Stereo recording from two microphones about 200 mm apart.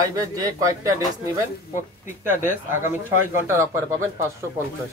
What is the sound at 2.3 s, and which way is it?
Speech, 40° left (ahead or behind).